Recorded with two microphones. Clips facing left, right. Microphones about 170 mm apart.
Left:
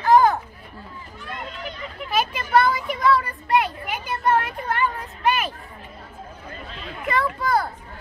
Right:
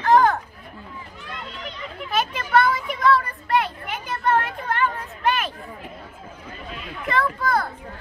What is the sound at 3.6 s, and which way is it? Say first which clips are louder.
A child's voice: left 1 dB; 5° left (ahead or behind).